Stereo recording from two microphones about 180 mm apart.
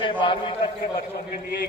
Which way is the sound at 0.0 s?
25° left (ahead or behind).